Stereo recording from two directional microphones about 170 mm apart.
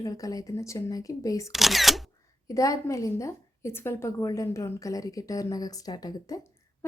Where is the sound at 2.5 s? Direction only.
20° left (ahead or behind).